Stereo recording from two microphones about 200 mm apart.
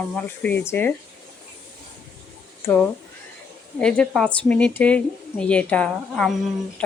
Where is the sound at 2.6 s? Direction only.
10° left (ahead or behind).